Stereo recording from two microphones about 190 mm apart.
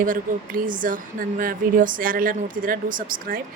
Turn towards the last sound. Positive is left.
turn(degrees=-45)  # may be behind; listen again after turning